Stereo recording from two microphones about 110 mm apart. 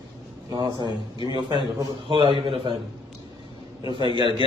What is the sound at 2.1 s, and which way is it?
Speech, 55° right (ahead or behind).